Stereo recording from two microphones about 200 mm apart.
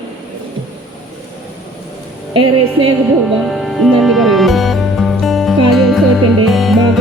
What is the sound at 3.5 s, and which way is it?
Music, centre (ahead or behind).